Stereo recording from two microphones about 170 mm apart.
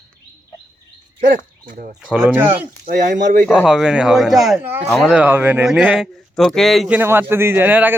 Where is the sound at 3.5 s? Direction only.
5° right (ahead or behind).